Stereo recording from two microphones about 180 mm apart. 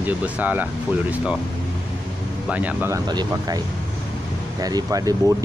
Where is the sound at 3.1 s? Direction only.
20° right (ahead or behind).